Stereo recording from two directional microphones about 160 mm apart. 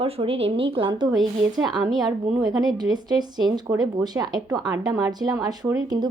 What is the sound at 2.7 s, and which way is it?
Speech, 25° right (ahead or behind).